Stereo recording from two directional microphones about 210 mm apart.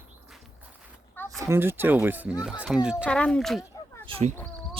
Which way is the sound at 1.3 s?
10° right (ahead or behind).